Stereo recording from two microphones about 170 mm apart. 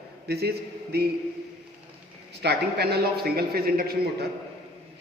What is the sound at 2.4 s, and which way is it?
Speech, 70° right (ahead or behind).